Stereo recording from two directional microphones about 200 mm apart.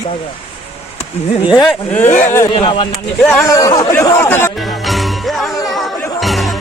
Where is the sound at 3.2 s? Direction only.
10° left (ahead or behind).